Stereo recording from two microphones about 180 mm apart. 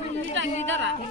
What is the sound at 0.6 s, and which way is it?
Speech, 90° right.